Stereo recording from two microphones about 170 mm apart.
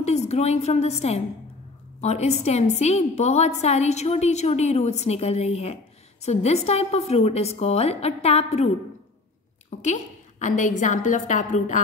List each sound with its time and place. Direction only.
0.3 s a woman's voice: 40° left (ahead or behind)